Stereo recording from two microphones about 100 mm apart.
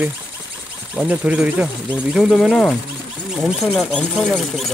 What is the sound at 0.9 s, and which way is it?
Speech, 15° right (ahead or behind).